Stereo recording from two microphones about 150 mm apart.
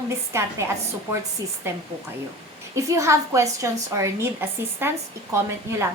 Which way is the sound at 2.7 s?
20° right (ahead or behind).